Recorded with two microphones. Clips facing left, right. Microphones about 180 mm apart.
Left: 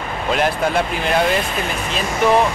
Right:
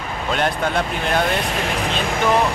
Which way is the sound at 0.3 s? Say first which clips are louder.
Left 3 dB; 5° left (ahead or behind).